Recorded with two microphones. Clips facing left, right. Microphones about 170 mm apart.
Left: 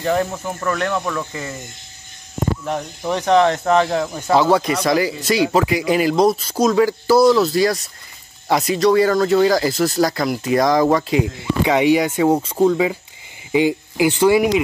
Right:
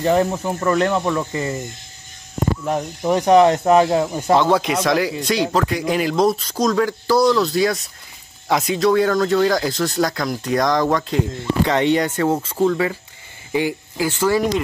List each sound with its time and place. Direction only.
0.0 s speech: 15° right (ahead or behind)
2.7 s speech: 10° right (ahead or behind)
4.3 s speech: centre (ahead or behind)